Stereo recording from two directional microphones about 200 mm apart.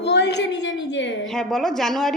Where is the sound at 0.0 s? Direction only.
60° left (ahead or behind).